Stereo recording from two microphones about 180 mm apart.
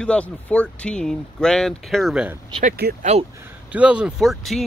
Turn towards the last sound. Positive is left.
turn(degrees=0)  # may be behind; listen again after turning